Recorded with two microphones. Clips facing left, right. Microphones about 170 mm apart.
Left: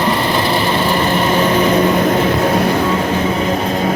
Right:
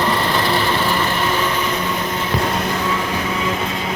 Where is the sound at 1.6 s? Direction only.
60° left (ahead or behind).